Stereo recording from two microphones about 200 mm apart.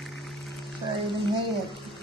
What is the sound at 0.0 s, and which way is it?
Music, centre (ahead or behind).